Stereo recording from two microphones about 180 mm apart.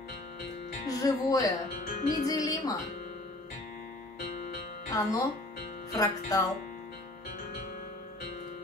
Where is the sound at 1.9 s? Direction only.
50° left (ahead or behind).